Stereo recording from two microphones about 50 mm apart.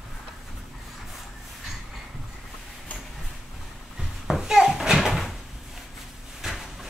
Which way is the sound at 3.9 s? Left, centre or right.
Centre.